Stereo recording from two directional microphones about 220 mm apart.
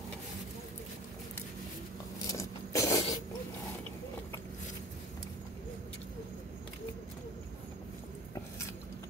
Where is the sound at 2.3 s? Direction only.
15° left (ahead or behind).